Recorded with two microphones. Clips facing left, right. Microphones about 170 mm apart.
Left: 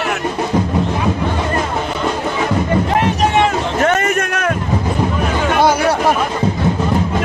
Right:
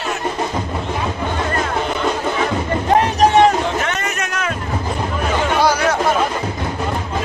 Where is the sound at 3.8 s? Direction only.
50° left (ahead or behind).